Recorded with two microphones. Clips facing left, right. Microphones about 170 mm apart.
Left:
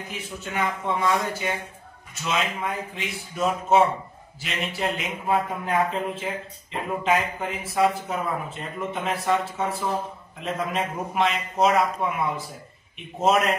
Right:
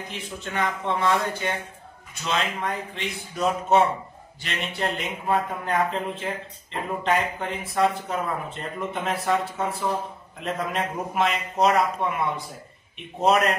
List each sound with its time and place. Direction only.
0.1 s a man's voice: 10° left (ahead or behind)